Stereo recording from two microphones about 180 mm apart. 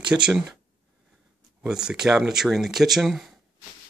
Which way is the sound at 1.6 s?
5° right (ahead or behind).